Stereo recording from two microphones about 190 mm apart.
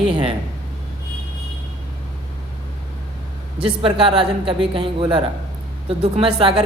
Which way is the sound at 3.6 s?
30° right (ahead or behind).